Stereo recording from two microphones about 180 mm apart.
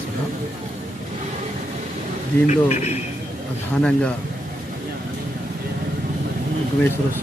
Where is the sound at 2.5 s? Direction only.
40° left (ahead or behind).